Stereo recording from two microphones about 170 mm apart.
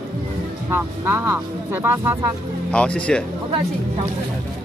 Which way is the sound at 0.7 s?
15° right (ahead or behind).